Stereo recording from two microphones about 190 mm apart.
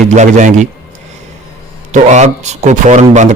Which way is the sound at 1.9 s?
40° right (ahead or behind).